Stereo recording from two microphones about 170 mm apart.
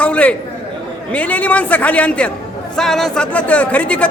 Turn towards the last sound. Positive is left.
turn(degrees=10)  # may be behind; listen again after turning